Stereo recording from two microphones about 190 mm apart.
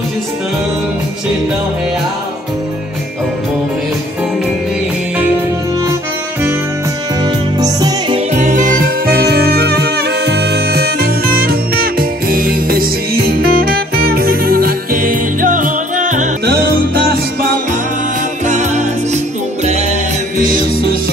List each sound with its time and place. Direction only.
7.6 s music: 20° right (ahead or behind)
8.3 s music: 40° right (ahead or behind)
16.4 s music: 55° right (ahead or behind)
18.4 s music: 40° right (ahead or behind)
20.3 s music: 45° right (ahead or behind)